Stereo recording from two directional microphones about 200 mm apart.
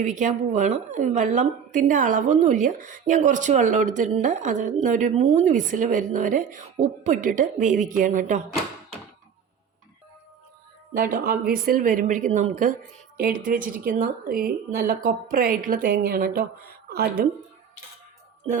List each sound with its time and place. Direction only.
0.0 s a woman's voice: 40° right (ahead or behind)
10.9 s a woman's voice: 50° right (ahead or behind)